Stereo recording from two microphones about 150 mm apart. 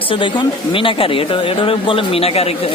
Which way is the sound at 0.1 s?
35° left (ahead or behind).